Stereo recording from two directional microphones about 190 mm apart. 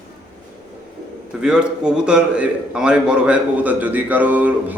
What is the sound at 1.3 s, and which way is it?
A man's voice, 5° right (ahead or behind).